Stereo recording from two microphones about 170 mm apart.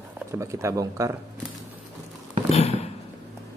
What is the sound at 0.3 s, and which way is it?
Speech, 15° right (ahead or behind).